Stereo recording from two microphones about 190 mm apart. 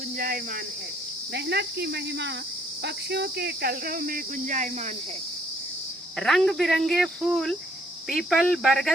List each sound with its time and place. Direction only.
1.3 s speech: 55° right (ahead or behind); by 4.7 s 40° right (ahead or behind)
6.1 s speech: centre (ahead or behind)